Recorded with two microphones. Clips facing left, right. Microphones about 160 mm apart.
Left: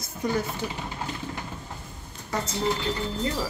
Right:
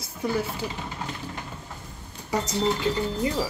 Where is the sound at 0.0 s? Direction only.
10° right (ahead or behind).